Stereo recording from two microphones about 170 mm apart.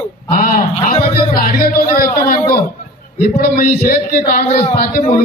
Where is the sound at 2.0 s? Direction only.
55° left (ahead or behind).